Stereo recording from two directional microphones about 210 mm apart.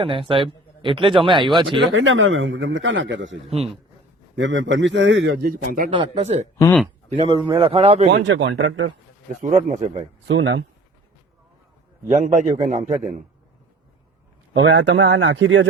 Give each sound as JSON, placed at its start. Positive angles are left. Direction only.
{"t": 0.0, "sound": "a man's voice", "side_deg": -25}
{"t": 1.9, "sound": "a man's voice", "side_deg": -65}
{"t": 4.4, "sound": "a man's voice", "side_deg": -60}
{"t": 5.9, "sound": "a man's voice", "side_deg": -25}
{"t": 6.6, "sound": "speech", "side_deg": 10}
{"t": 7.3, "sound": "a man's voice", "side_deg": -20}
{"t": 8.1, "sound": "a man's voice", "side_deg": -60}
{"t": 9.4, "sound": "a man's voice", "side_deg": -35}
{"t": 10.2, "sound": "a man's voice", "side_deg": -60}
{"t": 12.0, "sound": "a man's voice", "side_deg": -35}
{"t": 14.5, "sound": "a man's voice", "side_deg": -60}